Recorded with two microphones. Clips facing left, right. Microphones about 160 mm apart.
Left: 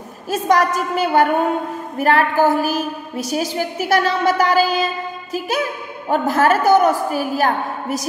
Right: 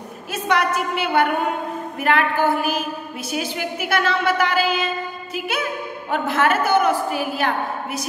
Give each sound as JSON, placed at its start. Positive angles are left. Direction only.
{"t": 0.3, "sound": "a woman's voice", "side_deg": 40}